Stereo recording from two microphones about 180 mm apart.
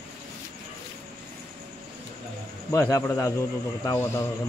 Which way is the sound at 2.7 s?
20° left (ahead or behind).